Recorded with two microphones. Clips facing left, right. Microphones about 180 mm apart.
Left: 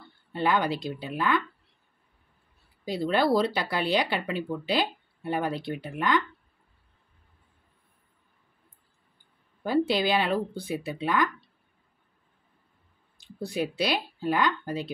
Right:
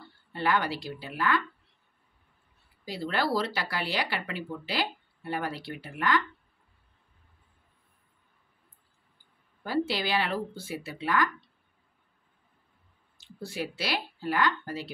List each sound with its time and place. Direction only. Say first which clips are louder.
0.3 s speech: left 3 dB; 20° left (ahead or behind)
2.8 s speech: left 5 dB; 20° left (ahead or behind)
9.6 s speech: left 5 dB; 20° left (ahead or behind)
13.2 s speech: left 5 dB; 15° left (ahead or behind)